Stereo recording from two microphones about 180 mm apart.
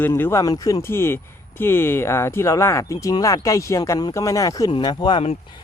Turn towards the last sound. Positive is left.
turn(degrees=30)  # may be behind; listen again after turning